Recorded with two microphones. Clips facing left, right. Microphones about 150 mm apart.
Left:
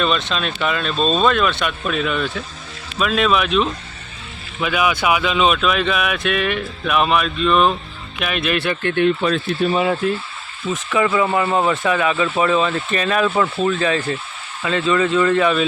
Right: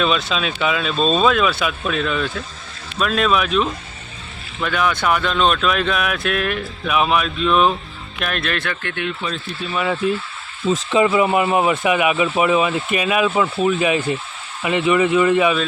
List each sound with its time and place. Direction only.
0.0 s speech: 5° right (ahead or behind)
8.6 s speech: 30° left (ahead or behind)
9.2 s speech: 60° left (ahead or behind)
10.7 s speech: 20° right (ahead or behind)